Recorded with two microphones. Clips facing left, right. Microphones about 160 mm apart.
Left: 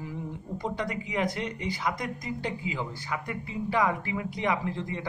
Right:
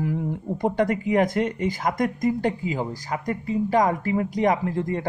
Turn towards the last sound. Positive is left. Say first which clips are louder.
# right 7 dB
turn(degrees=-50)  # may be behind; listen again after turning